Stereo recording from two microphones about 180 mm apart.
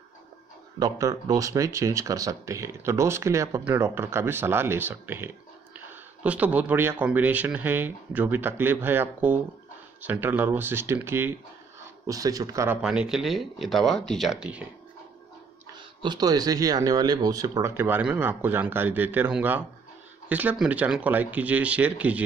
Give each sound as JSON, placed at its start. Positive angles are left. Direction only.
{"t": 0.7, "sound": "speech", "side_deg": -20}
{"t": 12.8, "sound": "speech", "side_deg": -5}
{"t": 16.0, "sound": "speech", "side_deg": -25}